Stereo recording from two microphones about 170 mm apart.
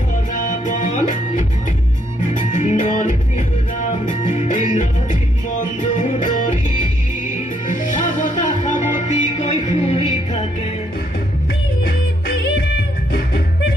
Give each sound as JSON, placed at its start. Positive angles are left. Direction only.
{"t": 0.3, "sound": "music", "side_deg": 50}
{"t": 11.8, "sound": "music", "side_deg": 70}